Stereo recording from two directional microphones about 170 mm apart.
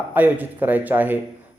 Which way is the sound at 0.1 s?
10° right (ahead or behind).